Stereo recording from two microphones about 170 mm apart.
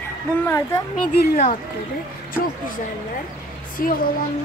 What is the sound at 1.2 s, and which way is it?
Speech, 55° left (ahead or behind).